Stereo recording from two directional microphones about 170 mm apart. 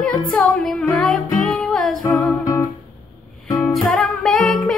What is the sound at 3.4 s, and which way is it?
Music, centre (ahead or behind).